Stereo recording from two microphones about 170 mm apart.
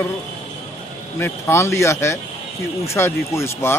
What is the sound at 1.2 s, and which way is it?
Speech, 15° left (ahead or behind).